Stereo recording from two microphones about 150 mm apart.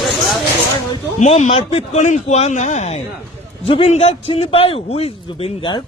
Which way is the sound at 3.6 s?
40° left (ahead or behind).